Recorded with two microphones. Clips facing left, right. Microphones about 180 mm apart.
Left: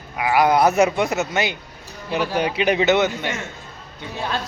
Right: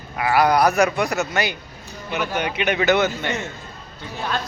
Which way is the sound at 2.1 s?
35° left (ahead or behind).